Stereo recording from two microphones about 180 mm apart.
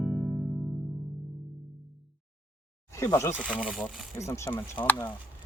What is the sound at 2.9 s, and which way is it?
Speech, 15° left (ahead or behind).